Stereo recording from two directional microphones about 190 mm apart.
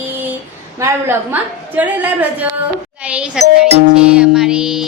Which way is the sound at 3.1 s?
5° right (ahead or behind).